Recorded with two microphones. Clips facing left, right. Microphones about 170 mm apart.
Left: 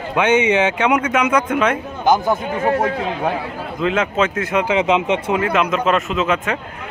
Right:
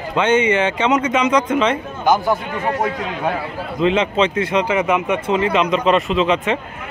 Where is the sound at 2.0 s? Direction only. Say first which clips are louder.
Left 1 dB; 20° left (ahead or behind).